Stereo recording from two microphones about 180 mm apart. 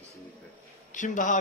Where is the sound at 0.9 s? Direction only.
45° left (ahead or behind).